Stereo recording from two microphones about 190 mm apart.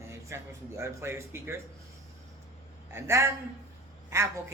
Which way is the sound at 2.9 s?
15° right (ahead or behind).